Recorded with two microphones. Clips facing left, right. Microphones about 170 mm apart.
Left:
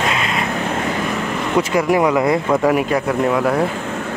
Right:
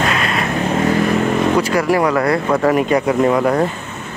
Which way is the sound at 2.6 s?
5° left (ahead or behind).